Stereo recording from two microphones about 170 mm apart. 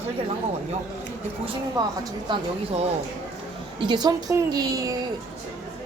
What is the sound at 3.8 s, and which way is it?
A woman's voice, 25° right (ahead or behind).